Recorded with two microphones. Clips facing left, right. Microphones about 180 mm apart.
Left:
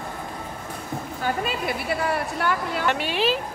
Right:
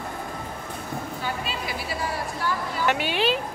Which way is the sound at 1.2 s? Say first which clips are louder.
Left 9 dB; 55° left (ahead or behind).